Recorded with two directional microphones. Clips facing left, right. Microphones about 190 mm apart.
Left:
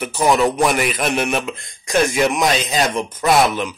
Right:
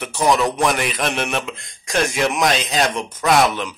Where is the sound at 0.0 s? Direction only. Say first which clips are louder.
Left 2 dB; centre (ahead or behind).